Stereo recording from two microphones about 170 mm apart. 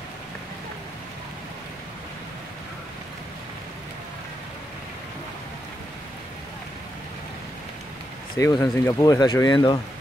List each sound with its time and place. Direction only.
8.4 s speech: 15° left (ahead or behind)